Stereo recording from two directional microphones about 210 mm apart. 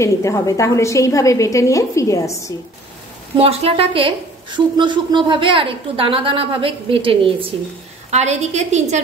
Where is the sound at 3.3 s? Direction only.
30° right (ahead or behind).